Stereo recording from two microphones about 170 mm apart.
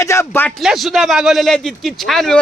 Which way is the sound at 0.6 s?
Centre (ahead or behind).